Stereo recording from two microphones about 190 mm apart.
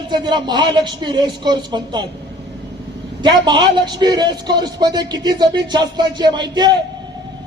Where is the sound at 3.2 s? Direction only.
25° right (ahead or behind).